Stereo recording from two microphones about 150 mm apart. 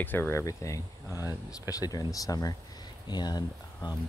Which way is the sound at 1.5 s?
25° left (ahead or behind).